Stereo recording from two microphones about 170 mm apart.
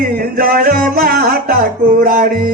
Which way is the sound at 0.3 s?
60° right (ahead or behind).